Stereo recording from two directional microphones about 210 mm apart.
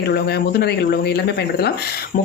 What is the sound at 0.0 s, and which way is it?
Speech, 50° left (ahead or behind).